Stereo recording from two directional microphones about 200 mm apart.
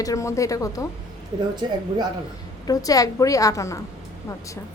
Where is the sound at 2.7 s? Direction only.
15° left (ahead or behind).